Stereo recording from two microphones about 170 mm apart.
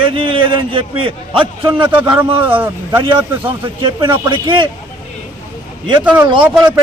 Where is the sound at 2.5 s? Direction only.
10° right (ahead or behind).